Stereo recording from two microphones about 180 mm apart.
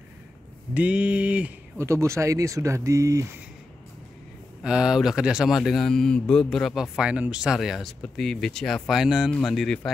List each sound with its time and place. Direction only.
0.7 s speech: 5° right (ahead or behind)
4.6 s speech: 5° right (ahead or behind)